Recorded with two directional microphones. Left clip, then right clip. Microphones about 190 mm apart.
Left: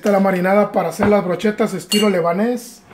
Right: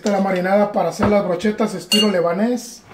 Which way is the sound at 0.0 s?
60° left (ahead or behind).